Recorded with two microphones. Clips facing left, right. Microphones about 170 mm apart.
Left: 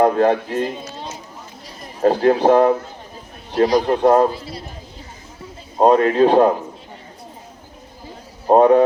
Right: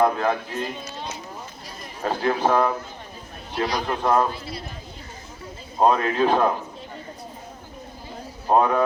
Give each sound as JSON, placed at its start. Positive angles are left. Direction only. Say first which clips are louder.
{"t": 0.0, "sound": "speech", "louder": "left 6 dB", "side_deg": 40}
{"t": 2.0, "sound": "a man's voice", "louder": "left 8 dB", "side_deg": 40}
{"t": 5.8, "sound": "a man's voice", "louder": "left 6 dB", "side_deg": 35}
{"t": 8.4, "sound": "a man's voice", "louder": "left 8 dB", "side_deg": 35}